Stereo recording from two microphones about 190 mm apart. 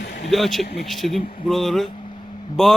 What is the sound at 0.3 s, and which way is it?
Speech, centre (ahead or behind).